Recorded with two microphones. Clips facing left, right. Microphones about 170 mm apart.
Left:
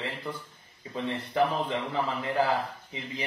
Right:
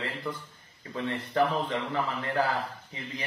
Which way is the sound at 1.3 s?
15° left (ahead or behind).